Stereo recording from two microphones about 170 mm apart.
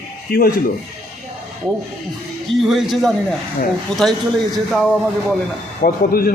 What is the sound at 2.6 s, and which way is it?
Speech, centre (ahead or behind).